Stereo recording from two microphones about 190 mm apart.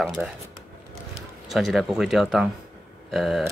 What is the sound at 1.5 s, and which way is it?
Speech, centre (ahead or behind).